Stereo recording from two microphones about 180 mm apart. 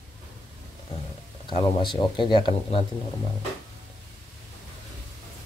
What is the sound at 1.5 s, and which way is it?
Speech, 25° left (ahead or behind).